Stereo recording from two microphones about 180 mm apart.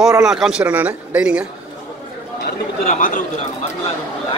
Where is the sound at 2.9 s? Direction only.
45° left (ahead or behind).